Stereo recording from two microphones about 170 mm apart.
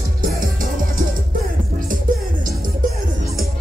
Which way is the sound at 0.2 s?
55° right (ahead or behind).